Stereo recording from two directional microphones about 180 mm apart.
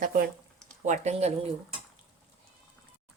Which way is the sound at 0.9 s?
35° right (ahead or behind).